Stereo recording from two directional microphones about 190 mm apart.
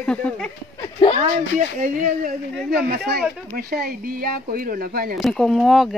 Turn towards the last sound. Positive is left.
turn(degrees=0)  # may be behind; listen again after turning